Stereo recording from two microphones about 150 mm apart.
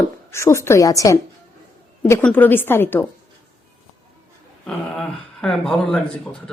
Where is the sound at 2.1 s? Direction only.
10° left (ahead or behind).